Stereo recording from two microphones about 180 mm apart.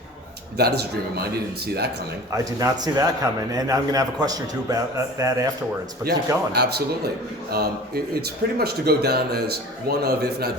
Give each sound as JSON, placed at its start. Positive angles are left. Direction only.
{"t": 0.5, "sound": "speech", "side_deg": -65}
{"t": 2.3, "sound": "a man's voice", "side_deg": -20}
{"t": 6.1, "sound": "speech", "side_deg": -65}